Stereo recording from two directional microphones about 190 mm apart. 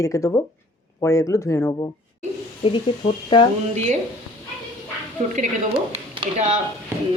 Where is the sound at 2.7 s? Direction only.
25° left (ahead or behind).